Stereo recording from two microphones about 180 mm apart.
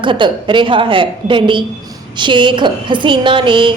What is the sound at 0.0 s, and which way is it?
A woman's voice, 25° right (ahead or behind).